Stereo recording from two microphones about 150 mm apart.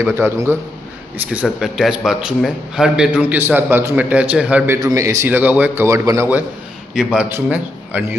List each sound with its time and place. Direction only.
0.0 s a man's voice: 15° right (ahead or behind)
1.3 s a man's voice: 5° right (ahead or behind)
4.8 s a man's voice: 20° right (ahead or behind)
7.0 s a man's voice: 5° right (ahead or behind)